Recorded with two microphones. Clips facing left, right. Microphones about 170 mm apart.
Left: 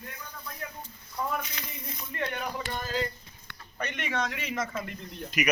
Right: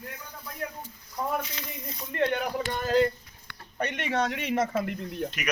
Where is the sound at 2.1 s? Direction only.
60° right (ahead or behind).